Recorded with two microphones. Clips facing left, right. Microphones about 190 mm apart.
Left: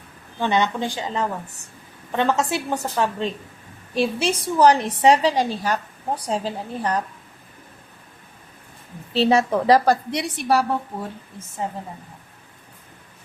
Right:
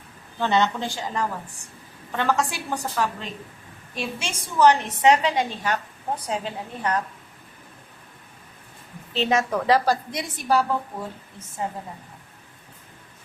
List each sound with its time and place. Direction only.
0.3 s a woman's voice: 15° left (ahead or behind); by 6.9 s 35° left (ahead or behind)
9.1 s a woman's voice: 35° left (ahead or behind)
9.8 s a woman's voice: 65° left (ahead or behind)